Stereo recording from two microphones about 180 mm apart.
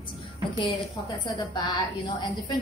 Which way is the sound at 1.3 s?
25° left (ahead or behind).